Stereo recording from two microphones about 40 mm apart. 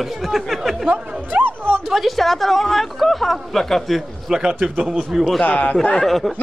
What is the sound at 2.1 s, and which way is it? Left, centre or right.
Speech, centre.